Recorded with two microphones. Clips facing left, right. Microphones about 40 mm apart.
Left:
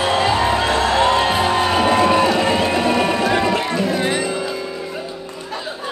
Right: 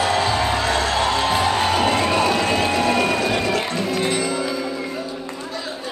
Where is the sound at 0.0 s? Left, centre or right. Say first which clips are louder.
Left 3 dB; left.